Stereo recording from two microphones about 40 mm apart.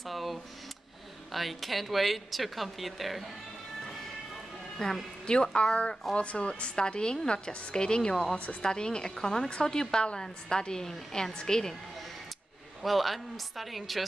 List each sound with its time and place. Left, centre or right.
0.0 s speech: centre
4.8 s a woman's voice: centre
12.8 s speech: centre